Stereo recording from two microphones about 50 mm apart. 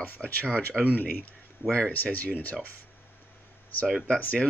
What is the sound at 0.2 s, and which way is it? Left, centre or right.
Speech, left.